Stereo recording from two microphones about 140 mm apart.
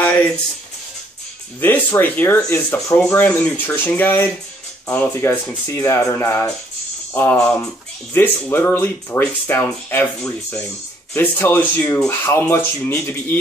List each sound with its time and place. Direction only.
1.6 s speech: 15° left (ahead or behind)